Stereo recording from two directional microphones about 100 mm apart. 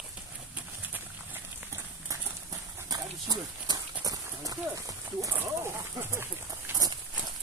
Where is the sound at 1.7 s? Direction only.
30° right (ahead or behind).